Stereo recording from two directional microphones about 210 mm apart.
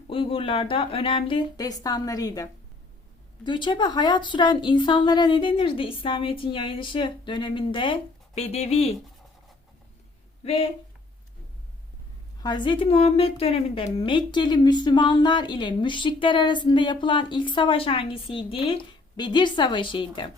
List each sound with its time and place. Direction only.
0.1 s a woman's voice: 25° left (ahead or behind)
10.4 s a woman's voice: 30° left (ahead or behind)
12.4 s a woman's voice: 20° left (ahead or behind)